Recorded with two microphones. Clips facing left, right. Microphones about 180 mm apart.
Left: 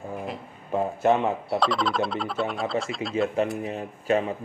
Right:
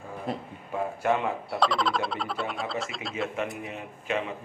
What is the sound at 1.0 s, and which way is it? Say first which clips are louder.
Speech: left 5 dB; 25° left (ahead or behind).